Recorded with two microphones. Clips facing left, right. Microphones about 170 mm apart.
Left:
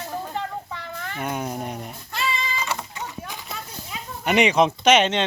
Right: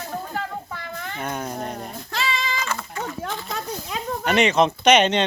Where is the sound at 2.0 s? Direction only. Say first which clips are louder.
Right 1 dB; 90° right.